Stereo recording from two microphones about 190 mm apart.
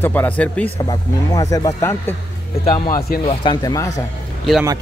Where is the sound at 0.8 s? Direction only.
20° left (ahead or behind).